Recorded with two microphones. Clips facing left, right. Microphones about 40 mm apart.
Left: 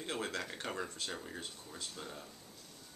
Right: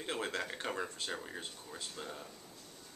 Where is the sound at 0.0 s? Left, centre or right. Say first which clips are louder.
Right 1 dB; centre.